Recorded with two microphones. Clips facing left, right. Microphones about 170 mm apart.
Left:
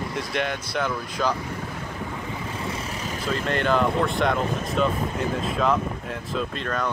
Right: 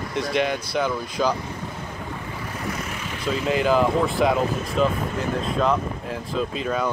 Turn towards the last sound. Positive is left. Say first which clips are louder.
# right 3 dB
turn(degrees=-5)  # may be behind; listen again after turning